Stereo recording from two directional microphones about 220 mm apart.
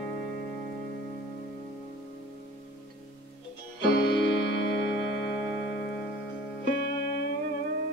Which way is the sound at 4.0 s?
55° left (ahead or behind).